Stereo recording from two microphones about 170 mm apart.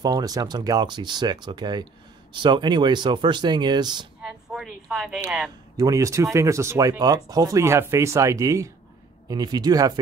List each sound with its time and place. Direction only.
0.0 s speech: 20° right (ahead or behind)
4.2 s speech: 5° right (ahead or behind)
5.8 s speech: 20° right (ahead or behind)